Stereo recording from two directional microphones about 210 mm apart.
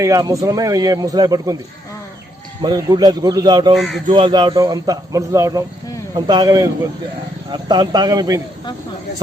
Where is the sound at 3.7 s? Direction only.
Centre (ahead or behind).